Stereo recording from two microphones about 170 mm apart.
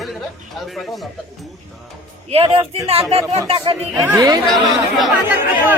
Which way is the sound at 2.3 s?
35° right (ahead or behind).